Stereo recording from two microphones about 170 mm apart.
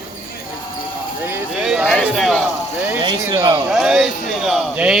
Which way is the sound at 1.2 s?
10° right (ahead or behind).